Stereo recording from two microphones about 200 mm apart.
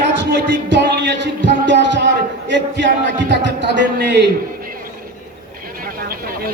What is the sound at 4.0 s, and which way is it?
Speech, 60° right (ahead or behind).